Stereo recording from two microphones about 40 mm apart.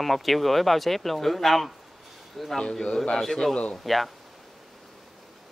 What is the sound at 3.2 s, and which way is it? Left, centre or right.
Speech, centre.